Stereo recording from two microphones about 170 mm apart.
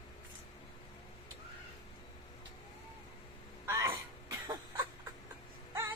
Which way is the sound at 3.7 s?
15° right (ahead or behind).